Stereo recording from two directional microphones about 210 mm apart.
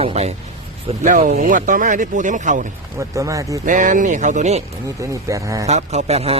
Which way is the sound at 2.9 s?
15° right (ahead or behind).